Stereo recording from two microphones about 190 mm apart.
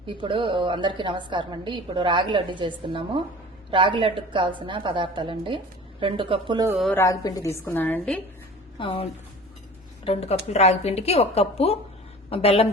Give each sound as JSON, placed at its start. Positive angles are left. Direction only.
{"t": 0.0, "sound": "a woman's voice", "side_deg": -25}
{"t": 6.9, "sound": "a woman's voice", "side_deg": 15}
{"t": 8.8, "sound": "a woman's voice", "side_deg": 30}